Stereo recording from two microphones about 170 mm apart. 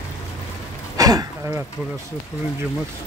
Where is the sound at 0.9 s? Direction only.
20° right (ahead or behind).